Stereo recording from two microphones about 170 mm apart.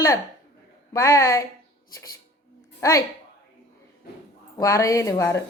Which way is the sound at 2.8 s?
15° left (ahead or behind).